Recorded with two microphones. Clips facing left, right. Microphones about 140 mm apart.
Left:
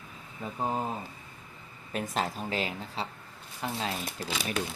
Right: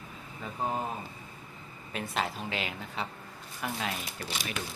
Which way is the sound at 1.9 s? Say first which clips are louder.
Left 2 dB; 40° left (ahead or behind).